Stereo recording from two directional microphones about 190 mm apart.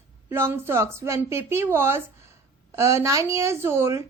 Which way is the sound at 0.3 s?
15° right (ahead or behind).